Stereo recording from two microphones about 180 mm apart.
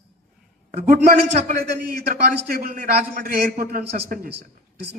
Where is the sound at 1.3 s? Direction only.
40° right (ahead or behind).